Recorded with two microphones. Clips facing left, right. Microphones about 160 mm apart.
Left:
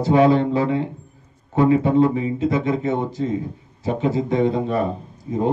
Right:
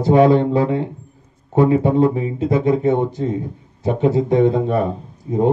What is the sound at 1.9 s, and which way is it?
A man's voice, 50° right (ahead or behind).